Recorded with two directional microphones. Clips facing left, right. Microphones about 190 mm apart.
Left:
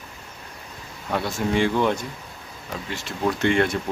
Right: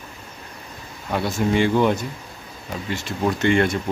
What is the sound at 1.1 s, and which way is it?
Speech, 5° right (ahead or behind).